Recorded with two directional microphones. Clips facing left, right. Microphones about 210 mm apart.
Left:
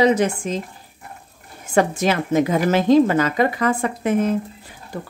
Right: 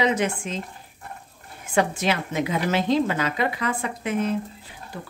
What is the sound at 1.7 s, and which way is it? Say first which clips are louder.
A woman's voice: left 4 dB; 45° left (ahead or behind).